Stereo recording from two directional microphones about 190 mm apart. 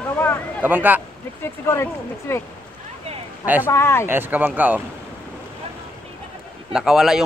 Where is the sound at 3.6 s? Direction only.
15° left (ahead or behind).